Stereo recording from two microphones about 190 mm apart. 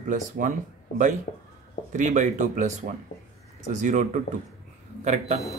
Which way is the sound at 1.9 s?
40° right (ahead or behind).